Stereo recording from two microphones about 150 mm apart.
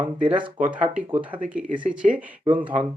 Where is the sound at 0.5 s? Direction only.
55° right (ahead or behind).